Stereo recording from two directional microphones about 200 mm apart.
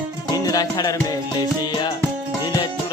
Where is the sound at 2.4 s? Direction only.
20° left (ahead or behind).